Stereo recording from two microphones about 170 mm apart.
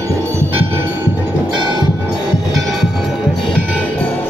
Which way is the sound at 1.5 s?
25° right (ahead or behind).